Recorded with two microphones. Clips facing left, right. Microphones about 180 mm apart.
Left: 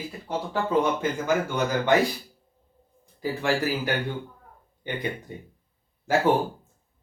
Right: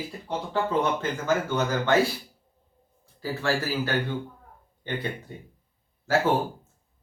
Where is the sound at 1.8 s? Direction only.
15° left (ahead or behind).